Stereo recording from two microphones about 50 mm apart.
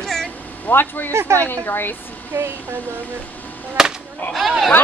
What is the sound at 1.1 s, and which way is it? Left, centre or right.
Speech, right.